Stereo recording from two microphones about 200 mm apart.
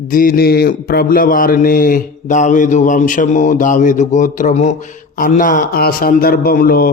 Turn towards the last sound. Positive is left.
turn(degrees=45)  # may be behind; listen again after turning